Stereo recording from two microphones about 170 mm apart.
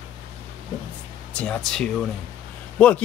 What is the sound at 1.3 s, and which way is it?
Speech, 5° left (ahead or behind).